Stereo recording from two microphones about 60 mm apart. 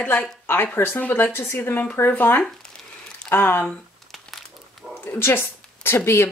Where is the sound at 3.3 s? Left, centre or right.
Left.